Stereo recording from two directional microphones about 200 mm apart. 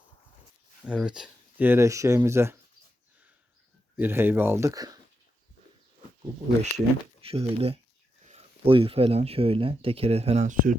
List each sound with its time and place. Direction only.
0.9 s speech: 5° right (ahead or behind)
3.9 s speech: 10° right (ahead or behind)
6.6 s speech: 30° right (ahead or behind)